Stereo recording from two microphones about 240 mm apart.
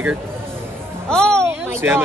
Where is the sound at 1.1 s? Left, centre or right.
Centre.